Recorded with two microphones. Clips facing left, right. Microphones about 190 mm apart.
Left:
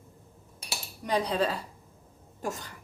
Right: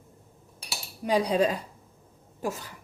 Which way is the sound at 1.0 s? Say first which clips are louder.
Right 4 dB; 10° right (ahead or behind).